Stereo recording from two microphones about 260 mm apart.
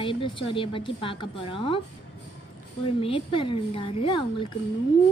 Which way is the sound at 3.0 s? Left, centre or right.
Centre.